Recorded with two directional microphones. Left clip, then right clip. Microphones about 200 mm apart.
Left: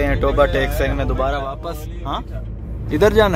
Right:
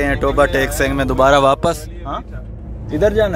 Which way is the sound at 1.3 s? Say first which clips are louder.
Right 13 dB; 40° right (ahead or behind).